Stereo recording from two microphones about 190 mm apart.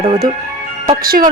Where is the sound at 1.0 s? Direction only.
50° right (ahead or behind).